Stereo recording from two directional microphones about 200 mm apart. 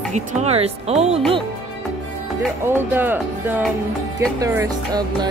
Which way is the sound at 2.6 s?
10° right (ahead or behind).